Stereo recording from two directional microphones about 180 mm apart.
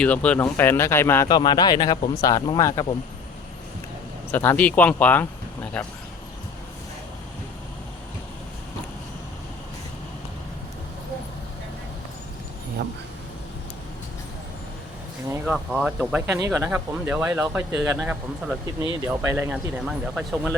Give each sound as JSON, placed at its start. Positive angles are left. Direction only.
{"t": 0.0, "sound": "speech", "side_deg": 5}
{"t": 4.3, "sound": "speech", "side_deg": 10}
{"t": 12.8, "sound": "speech", "side_deg": -65}
{"t": 15.5, "sound": "speech", "side_deg": -5}